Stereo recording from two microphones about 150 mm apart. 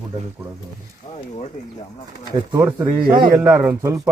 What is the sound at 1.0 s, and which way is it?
Speech, 35° left (ahead or behind).